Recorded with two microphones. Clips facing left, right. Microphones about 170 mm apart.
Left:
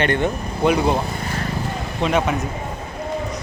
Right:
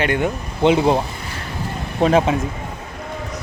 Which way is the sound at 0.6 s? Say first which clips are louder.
Right 3 dB; 25° right (ahead or behind).